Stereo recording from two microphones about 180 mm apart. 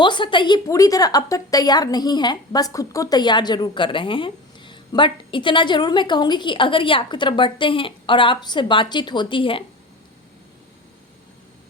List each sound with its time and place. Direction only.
0.0 s a woman's voice: 25° left (ahead or behind)